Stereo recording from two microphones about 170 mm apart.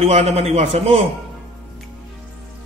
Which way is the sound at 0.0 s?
40° right (ahead or behind).